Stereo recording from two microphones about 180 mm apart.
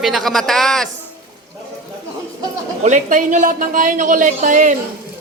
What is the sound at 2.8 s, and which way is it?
A woman's voice, 45° right (ahead or behind).